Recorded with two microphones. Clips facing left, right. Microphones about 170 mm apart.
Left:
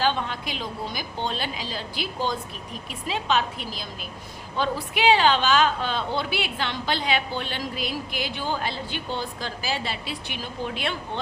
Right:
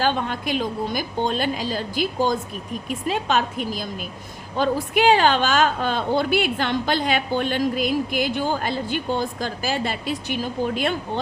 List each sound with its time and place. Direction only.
0.0 s a woman's voice: 50° right (ahead or behind)